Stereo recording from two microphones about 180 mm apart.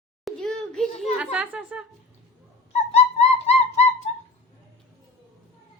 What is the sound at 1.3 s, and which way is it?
Speech, 5° right (ahead or behind).